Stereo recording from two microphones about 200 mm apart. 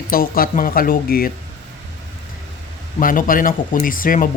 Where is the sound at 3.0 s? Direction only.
45° left (ahead or behind).